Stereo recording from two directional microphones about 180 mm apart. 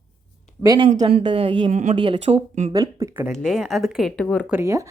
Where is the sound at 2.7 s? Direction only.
20° right (ahead or behind).